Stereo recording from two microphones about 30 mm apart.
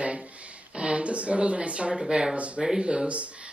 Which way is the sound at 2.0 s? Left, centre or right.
Right.